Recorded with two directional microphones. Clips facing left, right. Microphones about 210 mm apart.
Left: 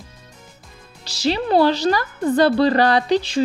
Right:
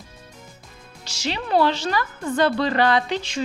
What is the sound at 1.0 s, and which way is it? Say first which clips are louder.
Speech: left 8 dB; 35° left (ahead or behind).